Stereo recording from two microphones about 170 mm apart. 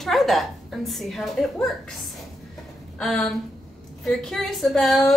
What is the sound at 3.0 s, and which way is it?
A woman's voice, 5° left (ahead or behind).